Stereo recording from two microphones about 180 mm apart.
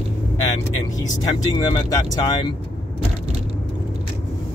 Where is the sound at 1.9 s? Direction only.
20° left (ahead or behind).